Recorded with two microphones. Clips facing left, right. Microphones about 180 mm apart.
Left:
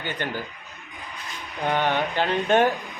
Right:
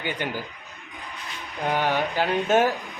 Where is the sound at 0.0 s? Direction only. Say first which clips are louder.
Right 1 dB; 10° right (ahead or behind).